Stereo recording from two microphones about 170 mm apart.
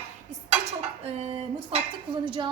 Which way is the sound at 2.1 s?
30° right (ahead or behind).